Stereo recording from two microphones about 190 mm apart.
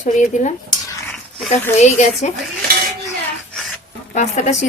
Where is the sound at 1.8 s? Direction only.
40° left (ahead or behind).